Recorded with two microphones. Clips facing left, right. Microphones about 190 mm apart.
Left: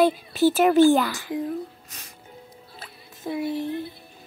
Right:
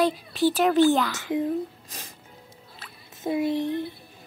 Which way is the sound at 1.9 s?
30° right (ahead or behind).